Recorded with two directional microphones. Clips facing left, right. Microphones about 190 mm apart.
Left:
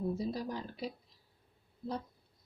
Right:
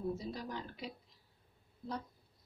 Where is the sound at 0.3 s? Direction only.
35° left (ahead or behind).